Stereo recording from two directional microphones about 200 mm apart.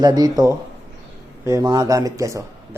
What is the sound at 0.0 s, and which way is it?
A man's voice, 20° right (ahead or behind).